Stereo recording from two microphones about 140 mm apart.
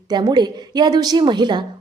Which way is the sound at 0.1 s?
30° right (ahead or behind).